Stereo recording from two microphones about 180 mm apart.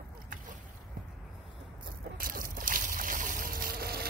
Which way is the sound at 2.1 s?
50° right (ahead or behind).